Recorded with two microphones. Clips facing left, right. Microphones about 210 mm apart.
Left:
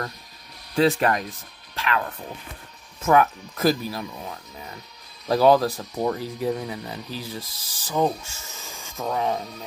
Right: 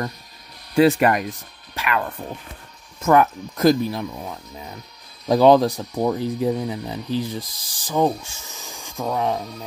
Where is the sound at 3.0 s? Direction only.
5° left (ahead or behind).